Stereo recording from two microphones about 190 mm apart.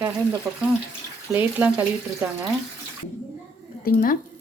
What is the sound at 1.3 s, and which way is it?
Frying, 10° right (ahead or behind).